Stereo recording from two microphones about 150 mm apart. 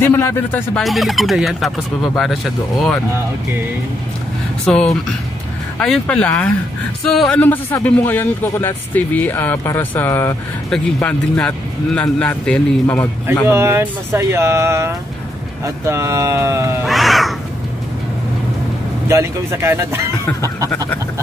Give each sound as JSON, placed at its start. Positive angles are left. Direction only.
{"t": 0.0, "sound": "speech", "side_deg": 15}
{"t": 0.7, "sound": "speech", "side_deg": 0}
{"t": 4.6, "sound": "speech", "side_deg": 0}
{"t": 13.5, "sound": "speech", "side_deg": -15}
{"t": 16.8, "sound": "crow", "side_deg": 0}
{"t": 19.0, "sound": "speech", "side_deg": -20}